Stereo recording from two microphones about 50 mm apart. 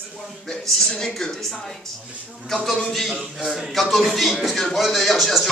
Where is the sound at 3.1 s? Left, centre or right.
Centre.